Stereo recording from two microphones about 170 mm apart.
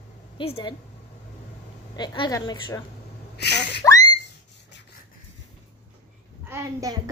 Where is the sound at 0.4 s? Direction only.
30° left (ahead or behind).